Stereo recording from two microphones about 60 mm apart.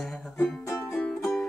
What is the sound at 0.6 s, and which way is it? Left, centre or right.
Music, left.